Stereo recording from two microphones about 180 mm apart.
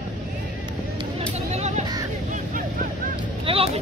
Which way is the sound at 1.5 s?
40° right (ahead or behind).